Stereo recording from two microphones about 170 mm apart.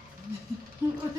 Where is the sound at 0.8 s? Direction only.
10° right (ahead or behind).